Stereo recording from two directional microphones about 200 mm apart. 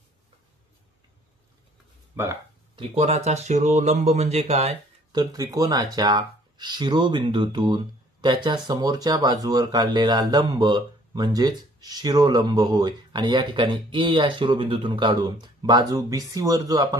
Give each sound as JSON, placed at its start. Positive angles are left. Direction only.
{"t": 2.1, "sound": "speech", "side_deg": -10}
{"t": 2.7, "sound": "speech", "side_deg": -30}